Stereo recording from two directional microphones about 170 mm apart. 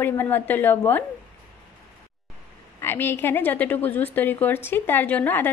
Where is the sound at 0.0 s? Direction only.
10° left (ahead or behind).